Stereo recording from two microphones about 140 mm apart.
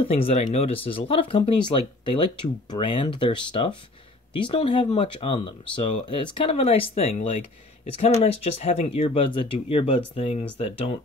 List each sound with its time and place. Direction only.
0.0 s speech: 45° left (ahead or behind)